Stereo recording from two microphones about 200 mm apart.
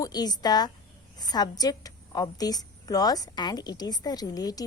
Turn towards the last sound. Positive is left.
turn(degrees=20)  # may be behind; listen again after turning